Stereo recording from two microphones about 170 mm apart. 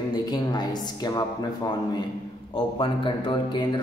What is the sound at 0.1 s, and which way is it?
A woman's voice, 25° left (ahead or behind).